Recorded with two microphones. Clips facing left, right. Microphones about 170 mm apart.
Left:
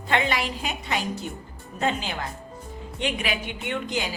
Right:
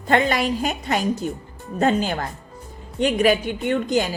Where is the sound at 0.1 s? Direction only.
45° right (ahead or behind).